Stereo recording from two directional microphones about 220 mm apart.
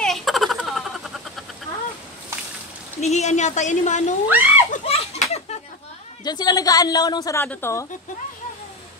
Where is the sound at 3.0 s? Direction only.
30° left (ahead or behind).